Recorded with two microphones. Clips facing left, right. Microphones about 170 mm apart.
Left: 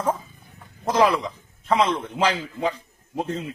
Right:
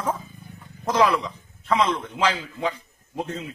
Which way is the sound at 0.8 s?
30° left (ahead or behind).